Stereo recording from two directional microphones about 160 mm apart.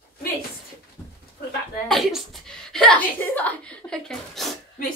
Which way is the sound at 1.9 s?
Centre (ahead or behind).